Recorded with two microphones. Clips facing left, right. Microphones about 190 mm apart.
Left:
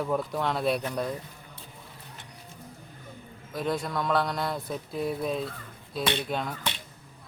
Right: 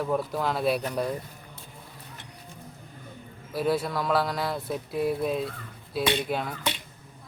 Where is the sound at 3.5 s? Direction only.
5° right (ahead or behind).